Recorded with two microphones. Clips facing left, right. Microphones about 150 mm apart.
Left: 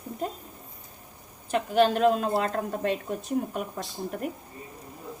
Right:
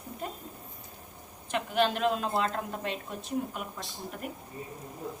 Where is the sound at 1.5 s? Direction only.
40° left (ahead or behind).